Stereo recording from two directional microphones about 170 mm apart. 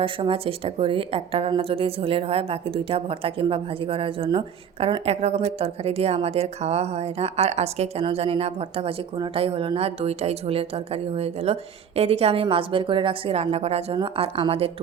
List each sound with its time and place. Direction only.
0.0 s speech: 30° right (ahead or behind)